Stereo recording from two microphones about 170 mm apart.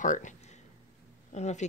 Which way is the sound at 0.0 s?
45° left (ahead or behind).